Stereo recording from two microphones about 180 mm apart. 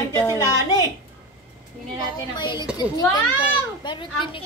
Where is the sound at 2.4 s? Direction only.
25° left (ahead or behind).